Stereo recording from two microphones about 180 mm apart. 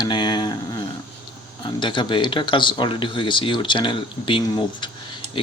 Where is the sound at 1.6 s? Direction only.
25° left (ahead or behind).